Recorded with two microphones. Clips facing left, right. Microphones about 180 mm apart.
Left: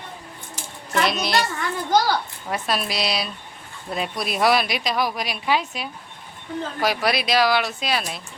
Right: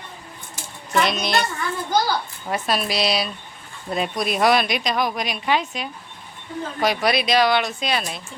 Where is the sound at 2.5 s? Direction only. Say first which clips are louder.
Right 2 dB; centre (ahead or behind).